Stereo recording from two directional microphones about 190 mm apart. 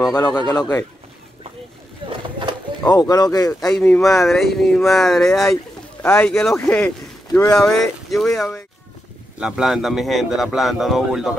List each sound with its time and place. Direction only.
0.4 s speech: 20° left (ahead or behind)
2.0 s a sound: 25° right (ahead or behind)
2.8 s speech: 20° left (ahead or behind)
3.7 s speech: 5° left (ahead or behind)